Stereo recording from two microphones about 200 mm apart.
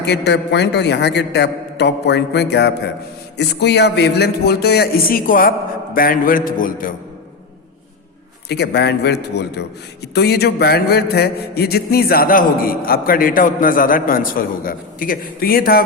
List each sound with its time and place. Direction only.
0.0 s a man's voice: 55° left (ahead or behind)
8.4 s a man's voice: 55° left (ahead or behind)